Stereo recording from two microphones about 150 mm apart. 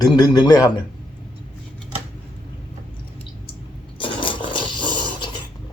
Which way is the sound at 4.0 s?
35° left (ahead or behind).